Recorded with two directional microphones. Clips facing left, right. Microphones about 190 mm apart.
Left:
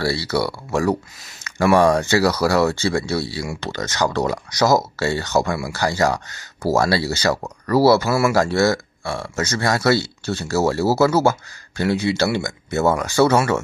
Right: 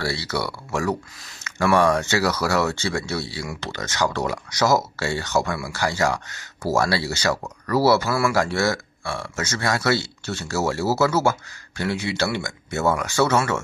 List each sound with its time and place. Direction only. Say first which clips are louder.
0.0 s speech: left 5 dB; 35° left (ahead or behind)
1.4 s a sound: left 4 dB; 25° left (ahead or behind)
1.8 s speech: left 4 dB; 35° left (ahead or behind)
8.0 s speech: left 4 dB; 25° left (ahead or behind)
8.4 s speech: left 4 dB; 35° left (ahead or behind)